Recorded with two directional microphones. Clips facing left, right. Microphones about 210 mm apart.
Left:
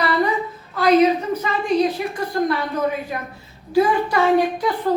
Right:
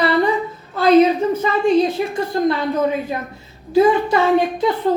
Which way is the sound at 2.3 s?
25° right (ahead or behind).